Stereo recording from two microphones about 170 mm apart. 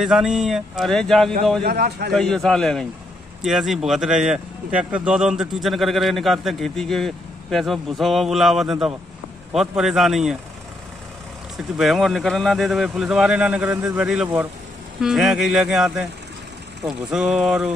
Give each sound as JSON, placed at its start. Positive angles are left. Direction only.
{"t": 0.0, "sound": "speech", "side_deg": -5}
{"t": 1.6, "sound": "a man's voice", "side_deg": -65}
{"t": 2.1, "sound": "speech", "side_deg": 5}
{"t": 11.5, "sound": "speech", "side_deg": 0}